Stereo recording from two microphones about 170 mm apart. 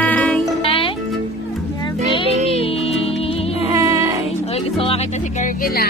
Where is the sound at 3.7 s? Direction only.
15° right (ahead or behind).